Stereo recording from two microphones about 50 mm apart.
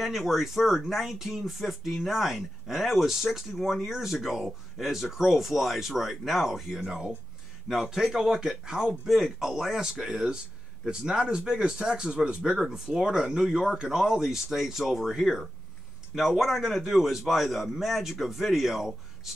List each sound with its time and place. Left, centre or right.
0.0 s speech: centre